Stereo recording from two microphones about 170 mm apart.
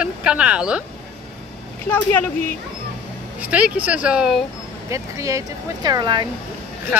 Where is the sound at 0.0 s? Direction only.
5° right (ahead or behind).